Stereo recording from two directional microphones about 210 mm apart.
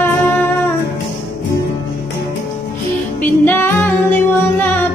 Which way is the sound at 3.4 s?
10° left (ahead or behind).